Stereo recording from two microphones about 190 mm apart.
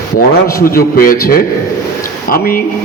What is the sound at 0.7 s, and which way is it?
A man's voice, 50° left (ahead or behind).